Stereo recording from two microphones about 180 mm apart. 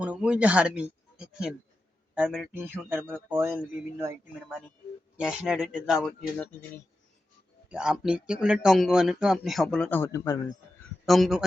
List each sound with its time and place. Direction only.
0.0 s speech: 5° right (ahead or behind)
5.1 s speech: 5° right (ahead or behind)
7.7 s speech: 5° right (ahead or behind); by 10.4 s 15° left (ahead or behind)
11.0 s speech: centre (ahead or behind)